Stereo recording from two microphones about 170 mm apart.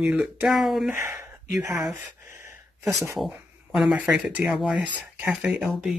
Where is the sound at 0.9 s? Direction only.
15° right (ahead or behind).